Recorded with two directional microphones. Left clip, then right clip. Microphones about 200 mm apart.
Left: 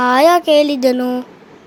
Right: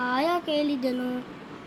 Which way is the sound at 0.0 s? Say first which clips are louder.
Left 15 dB; 55° left (ahead or behind).